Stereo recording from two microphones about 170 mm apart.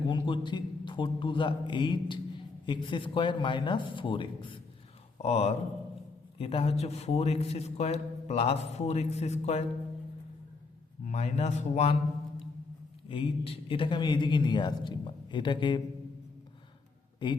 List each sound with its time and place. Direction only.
0.1 s a man's voice: 25° left (ahead or behind)
11.0 s speech: 40° left (ahead or behind)
13.1 s a man's voice: 30° left (ahead or behind)
17.2 s a man's voice: 25° left (ahead or behind)